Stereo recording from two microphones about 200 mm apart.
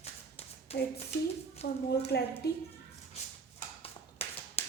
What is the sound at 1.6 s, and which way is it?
Speech, 30° left (ahead or behind).